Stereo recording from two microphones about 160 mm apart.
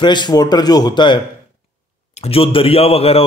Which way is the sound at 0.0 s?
30° left (ahead or behind).